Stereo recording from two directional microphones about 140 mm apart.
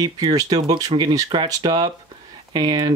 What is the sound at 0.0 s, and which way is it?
Speech, 25° right (ahead or behind).